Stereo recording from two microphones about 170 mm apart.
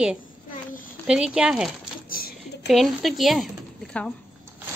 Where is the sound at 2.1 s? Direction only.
60° left (ahead or behind).